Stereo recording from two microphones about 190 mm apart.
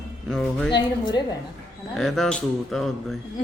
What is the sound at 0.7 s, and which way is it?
Speech, 20° left (ahead or behind).